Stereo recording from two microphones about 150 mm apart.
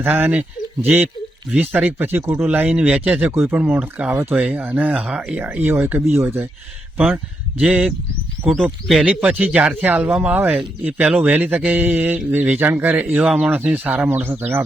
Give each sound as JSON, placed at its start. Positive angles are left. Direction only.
{"t": 0.0, "sound": "speech", "side_deg": -15}
{"t": 1.5, "sound": "speech", "side_deg": -10}